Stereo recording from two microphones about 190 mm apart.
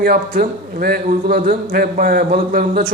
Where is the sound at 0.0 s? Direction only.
50° right (ahead or behind).